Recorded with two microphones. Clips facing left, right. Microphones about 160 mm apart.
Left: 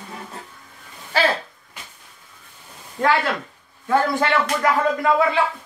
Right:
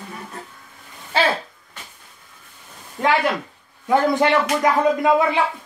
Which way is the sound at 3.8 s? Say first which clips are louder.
Right 3 dB; 20° right (ahead or behind).